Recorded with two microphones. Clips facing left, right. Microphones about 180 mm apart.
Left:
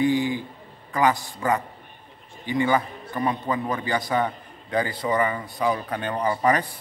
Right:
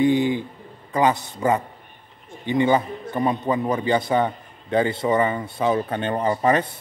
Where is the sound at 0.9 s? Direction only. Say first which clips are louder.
Right 2 dB; 20° right (ahead or behind).